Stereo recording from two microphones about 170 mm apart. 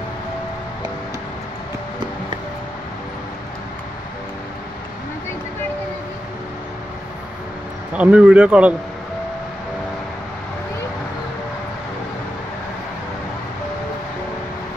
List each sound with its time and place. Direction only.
8.0 s speech: 5° right (ahead or behind)